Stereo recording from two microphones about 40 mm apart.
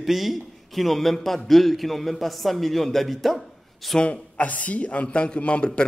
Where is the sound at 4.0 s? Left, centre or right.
Left.